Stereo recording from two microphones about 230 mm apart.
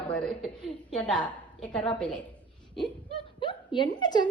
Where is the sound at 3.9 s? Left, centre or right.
Centre.